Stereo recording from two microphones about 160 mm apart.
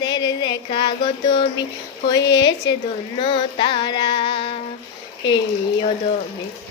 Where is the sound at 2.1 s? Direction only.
90° left.